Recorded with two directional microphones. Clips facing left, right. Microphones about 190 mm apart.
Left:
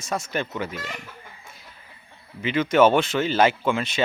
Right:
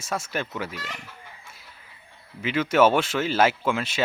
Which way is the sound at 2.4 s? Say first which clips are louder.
Left 2 dB; 5° right (ahead or behind).